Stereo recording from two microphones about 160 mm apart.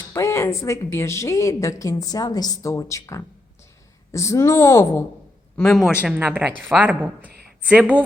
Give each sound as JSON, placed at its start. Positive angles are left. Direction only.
{"t": 0.1, "sound": "speech", "side_deg": 20}
{"t": 5.5, "sound": "speech", "side_deg": 0}